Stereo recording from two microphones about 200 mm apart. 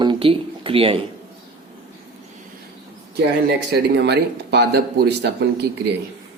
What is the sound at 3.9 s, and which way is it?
Speech, 60° right (ahead or behind).